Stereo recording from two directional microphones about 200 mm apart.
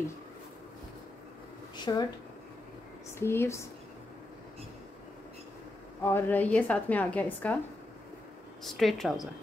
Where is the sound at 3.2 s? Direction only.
10° left (ahead or behind).